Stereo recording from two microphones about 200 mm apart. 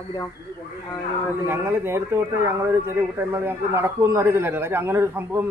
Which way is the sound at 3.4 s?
10° right (ahead or behind).